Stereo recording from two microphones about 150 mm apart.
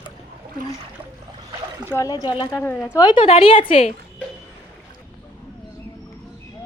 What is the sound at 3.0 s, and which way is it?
Speech, 30° left (ahead or behind).